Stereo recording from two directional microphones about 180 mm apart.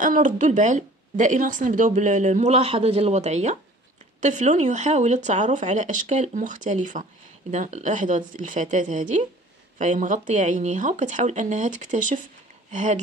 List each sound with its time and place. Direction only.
0.0 s speech: 45° right (ahead or behind)